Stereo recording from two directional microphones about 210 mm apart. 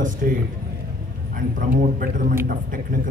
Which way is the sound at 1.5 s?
45° right (ahead or behind).